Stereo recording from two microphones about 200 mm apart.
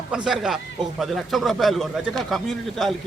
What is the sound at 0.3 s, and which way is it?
Speech, centre (ahead or behind).